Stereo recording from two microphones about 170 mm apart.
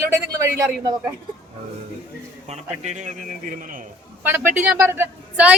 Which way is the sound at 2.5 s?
45° right (ahead or behind).